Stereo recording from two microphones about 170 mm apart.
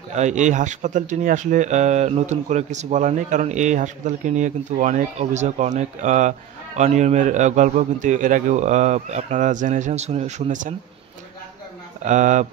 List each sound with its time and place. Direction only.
0.1 s speech: 45° right (ahead or behind)
12.0 s speech: 45° right (ahead or behind)